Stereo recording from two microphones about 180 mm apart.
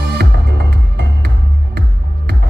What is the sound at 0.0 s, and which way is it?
Music, 65° right (ahead or behind).